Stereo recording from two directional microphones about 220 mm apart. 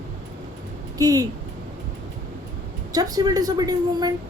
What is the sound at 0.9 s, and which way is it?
Speech, 15° right (ahead or behind).